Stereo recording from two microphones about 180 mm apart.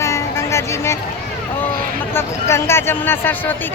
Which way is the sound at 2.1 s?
15° left (ahead or behind).